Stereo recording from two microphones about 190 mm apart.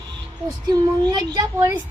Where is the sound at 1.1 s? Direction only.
20° right (ahead or behind).